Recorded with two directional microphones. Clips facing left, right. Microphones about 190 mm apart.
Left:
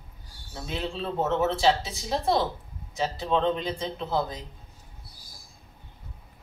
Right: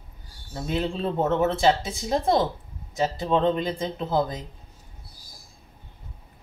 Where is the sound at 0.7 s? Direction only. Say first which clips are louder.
Right 5 dB; 50° right (ahead or behind).